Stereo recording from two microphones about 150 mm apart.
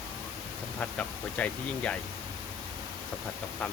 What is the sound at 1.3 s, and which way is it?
Speech, 10° left (ahead or behind).